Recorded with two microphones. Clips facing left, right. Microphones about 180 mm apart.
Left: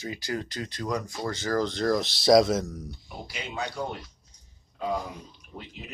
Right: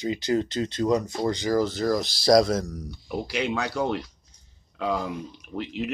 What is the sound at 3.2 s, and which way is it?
Speech, 80° right.